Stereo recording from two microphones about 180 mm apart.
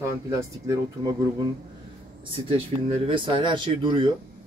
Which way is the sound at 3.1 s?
25° right (ahead or behind).